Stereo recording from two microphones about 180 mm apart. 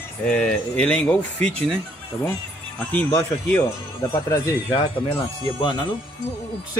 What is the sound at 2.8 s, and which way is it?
Speech, 10° left (ahead or behind).